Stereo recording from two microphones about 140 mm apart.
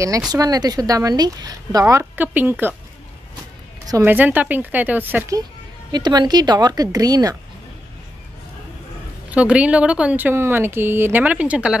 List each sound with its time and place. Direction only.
0.3 s speech: 25° right (ahead or behind)
4.0 s speech: 15° right (ahead or behind)
5.9 s speech: 30° right (ahead or behind)
9.3 s speech: 10° right (ahead or behind)